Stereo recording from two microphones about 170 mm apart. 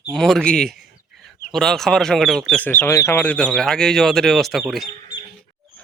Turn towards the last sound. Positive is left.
turn(degrees=0)  # may be behind; listen again after turning